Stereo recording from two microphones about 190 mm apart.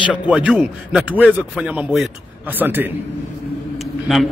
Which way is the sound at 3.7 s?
Centre (ahead or behind).